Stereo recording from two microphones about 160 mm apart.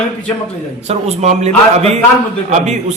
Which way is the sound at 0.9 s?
45° right (ahead or behind).